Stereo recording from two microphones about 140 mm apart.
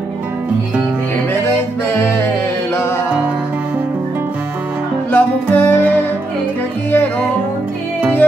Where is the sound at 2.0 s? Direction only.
15° left (ahead or behind).